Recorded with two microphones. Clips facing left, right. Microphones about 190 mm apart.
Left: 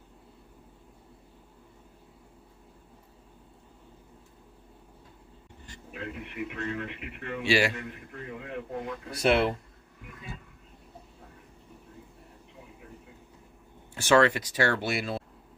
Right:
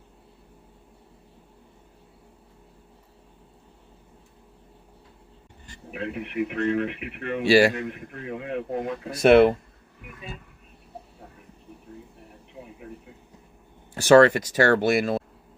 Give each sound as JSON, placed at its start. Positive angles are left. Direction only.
{"t": 5.9, "sound": "speech", "side_deg": -70}
{"t": 7.4, "sound": "a man's voice", "side_deg": -40}
{"t": 8.3, "sound": "speech", "side_deg": -70}
{"t": 8.9, "sound": "speech", "side_deg": -55}
{"t": 13.9, "sound": "speech", "side_deg": -40}